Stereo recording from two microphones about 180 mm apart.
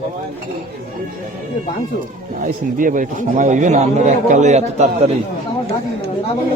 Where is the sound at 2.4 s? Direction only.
50° right (ahead or behind).